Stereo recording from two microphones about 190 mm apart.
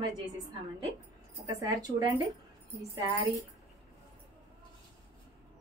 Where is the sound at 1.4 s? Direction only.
20° right (ahead or behind).